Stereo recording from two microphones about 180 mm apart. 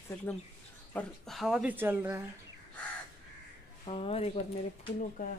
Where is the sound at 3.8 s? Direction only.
30° left (ahead or behind).